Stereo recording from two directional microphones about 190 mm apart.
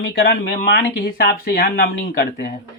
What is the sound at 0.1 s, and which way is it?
Speech, 55° left (ahead or behind).